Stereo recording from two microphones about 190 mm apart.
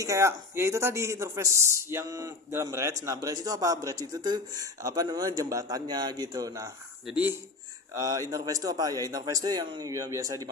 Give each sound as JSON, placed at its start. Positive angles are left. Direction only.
{"t": 0.0, "sound": "a man's voice", "side_deg": -15}